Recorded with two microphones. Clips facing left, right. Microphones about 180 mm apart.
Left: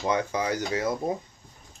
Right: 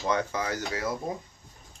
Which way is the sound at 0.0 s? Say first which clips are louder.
Left 2 dB; 15° left (ahead or behind).